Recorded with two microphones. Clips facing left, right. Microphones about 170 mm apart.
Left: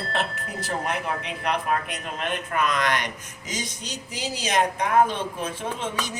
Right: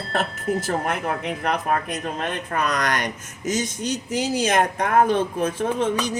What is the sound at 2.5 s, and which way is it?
Speech, 40° right (ahead or behind).